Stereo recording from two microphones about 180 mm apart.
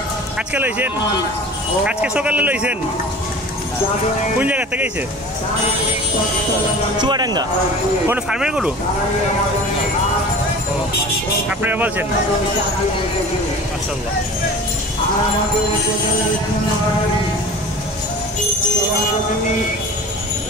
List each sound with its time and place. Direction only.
0.6 s a man's voice: 10° right (ahead or behind)
1.9 s a man's voice: 5° right (ahead or behind)
4.4 s a man's voice: 10° right (ahead or behind)
7.0 s speech: 25° right (ahead or behind)
8.1 s speech: 5° right (ahead or behind)
11.6 s a man's voice: 10° right (ahead or behind)